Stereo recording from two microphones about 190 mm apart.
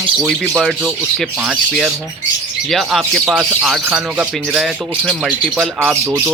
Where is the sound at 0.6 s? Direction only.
Centre (ahead or behind).